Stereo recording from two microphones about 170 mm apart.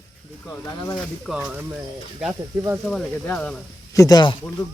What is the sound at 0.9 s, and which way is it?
Speech, centre (ahead or behind).